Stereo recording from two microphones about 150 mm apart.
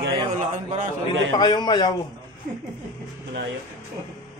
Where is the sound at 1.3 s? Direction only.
30° left (ahead or behind).